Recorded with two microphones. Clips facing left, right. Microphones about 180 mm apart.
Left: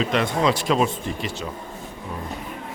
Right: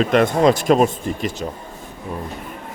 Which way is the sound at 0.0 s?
50° right (ahead or behind).